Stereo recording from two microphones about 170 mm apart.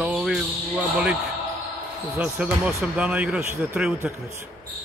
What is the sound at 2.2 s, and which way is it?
Speech, 5° right (ahead or behind).